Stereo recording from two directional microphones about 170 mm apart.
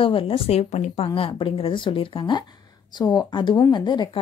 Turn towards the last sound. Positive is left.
turn(degrees=25)  # may be behind; listen again after turning